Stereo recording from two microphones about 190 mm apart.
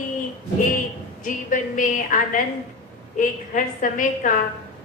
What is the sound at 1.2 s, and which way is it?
A woman's voice, 45° left (ahead or behind).